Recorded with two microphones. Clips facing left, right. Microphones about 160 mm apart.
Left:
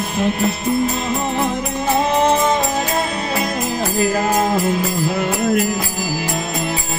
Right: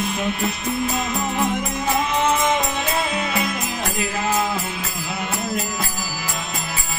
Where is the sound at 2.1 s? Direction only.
35° left (ahead or behind).